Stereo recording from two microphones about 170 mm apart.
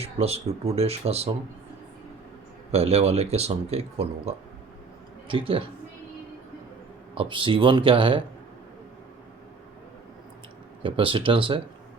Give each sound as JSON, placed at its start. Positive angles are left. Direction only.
{"t": 0.0, "sound": "speech", "side_deg": -35}
{"t": 2.7, "sound": "speech", "side_deg": -40}
{"t": 7.2, "sound": "speech", "side_deg": -30}
{"t": 10.8, "sound": "speech", "side_deg": -30}